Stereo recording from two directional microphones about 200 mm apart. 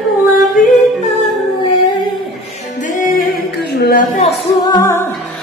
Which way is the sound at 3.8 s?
45° left (ahead or behind).